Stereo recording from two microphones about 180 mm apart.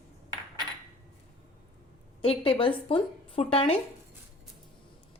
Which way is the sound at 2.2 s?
30° left (ahead or behind).